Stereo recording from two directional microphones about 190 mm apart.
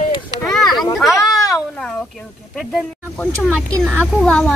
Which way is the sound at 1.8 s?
5° left (ahead or behind).